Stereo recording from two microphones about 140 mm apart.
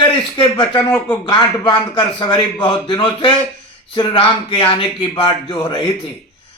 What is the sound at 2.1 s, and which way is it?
A man's voice, 35° left (ahead or behind).